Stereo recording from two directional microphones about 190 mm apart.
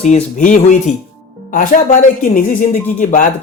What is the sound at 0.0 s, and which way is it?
A woman's voice, 35° left (ahead or behind).